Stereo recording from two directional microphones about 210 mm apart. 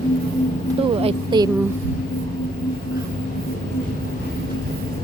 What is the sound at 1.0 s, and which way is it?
Speech, 20° right (ahead or behind).